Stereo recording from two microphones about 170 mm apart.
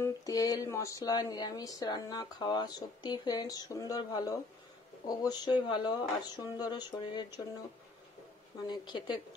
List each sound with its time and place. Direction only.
0.0 s speech: 20° left (ahead or behind)
8.6 s speech: 25° left (ahead or behind)